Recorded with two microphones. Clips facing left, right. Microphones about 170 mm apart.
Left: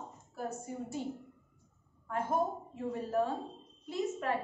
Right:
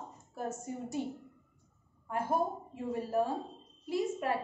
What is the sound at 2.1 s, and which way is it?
A woman's voice, 10° right (ahead or behind).